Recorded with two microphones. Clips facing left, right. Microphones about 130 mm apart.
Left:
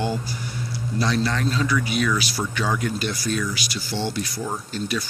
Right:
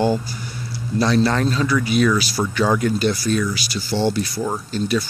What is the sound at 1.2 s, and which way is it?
Speech, 40° right (ahead or behind).